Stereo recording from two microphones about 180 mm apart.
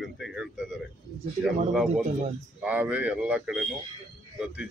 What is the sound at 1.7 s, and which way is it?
A man's voice, centre (ahead or behind).